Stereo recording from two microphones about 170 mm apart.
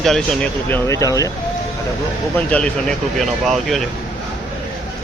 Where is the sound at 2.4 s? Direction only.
5° left (ahead or behind).